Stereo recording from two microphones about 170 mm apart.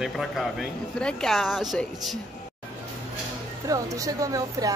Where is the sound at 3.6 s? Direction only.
20° right (ahead or behind).